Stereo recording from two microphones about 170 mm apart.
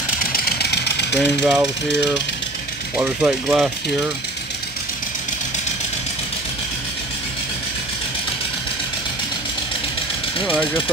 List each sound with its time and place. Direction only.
0.2 s vehicle: 60° left (ahead or behind); by 1.2 s 80° left
1.2 s speech: centre (ahead or behind)
3.0 s speech: 5° right (ahead or behind)